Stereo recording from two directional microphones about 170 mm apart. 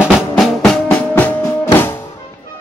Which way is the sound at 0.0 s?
Centre (ahead or behind).